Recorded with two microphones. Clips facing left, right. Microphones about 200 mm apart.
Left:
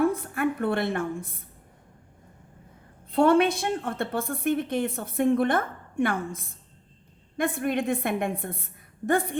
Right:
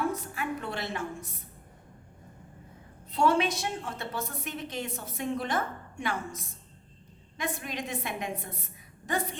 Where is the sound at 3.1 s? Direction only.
55° left (ahead or behind).